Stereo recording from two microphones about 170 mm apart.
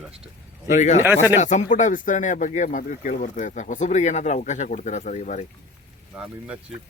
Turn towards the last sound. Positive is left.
turn(degrees=-5)  # may be behind; listen again after turning